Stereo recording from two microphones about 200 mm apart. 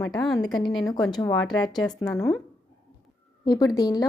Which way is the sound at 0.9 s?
20° left (ahead or behind).